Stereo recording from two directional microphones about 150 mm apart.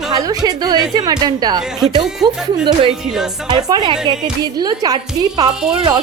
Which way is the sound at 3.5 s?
30° right (ahead or behind).